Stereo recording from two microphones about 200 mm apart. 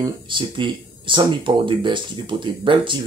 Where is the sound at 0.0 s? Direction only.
25° right (ahead or behind).